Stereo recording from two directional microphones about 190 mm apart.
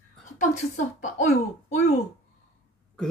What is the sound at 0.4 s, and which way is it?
Speech, 40° left (ahead or behind).